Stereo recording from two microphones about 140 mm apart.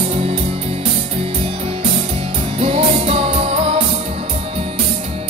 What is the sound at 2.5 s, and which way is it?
Music, 45° right (ahead or behind).